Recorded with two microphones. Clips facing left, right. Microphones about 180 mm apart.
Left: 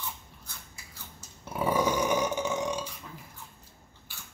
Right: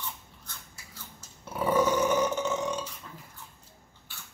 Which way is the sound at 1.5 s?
10° left (ahead or behind).